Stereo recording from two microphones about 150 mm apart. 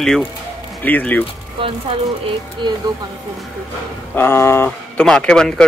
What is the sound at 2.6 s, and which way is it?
Speech, 30° right (ahead or behind).